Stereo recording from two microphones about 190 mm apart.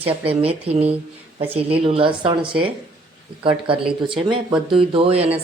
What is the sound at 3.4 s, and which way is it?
A woman's voice, 25° right (ahead or behind).